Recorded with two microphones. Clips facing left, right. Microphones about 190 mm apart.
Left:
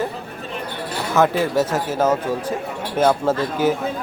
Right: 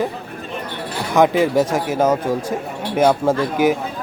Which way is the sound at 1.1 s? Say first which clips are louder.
Right 3 dB; 15° right (ahead or behind).